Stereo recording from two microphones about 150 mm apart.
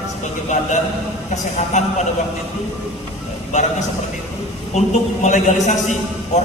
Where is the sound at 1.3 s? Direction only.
50° left (ahead or behind).